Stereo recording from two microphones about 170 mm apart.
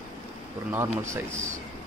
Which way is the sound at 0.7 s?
15° right (ahead or behind).